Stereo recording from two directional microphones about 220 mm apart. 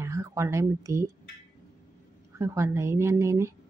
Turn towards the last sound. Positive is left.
turn(degrees=-15)  # may be behind; listen again after turning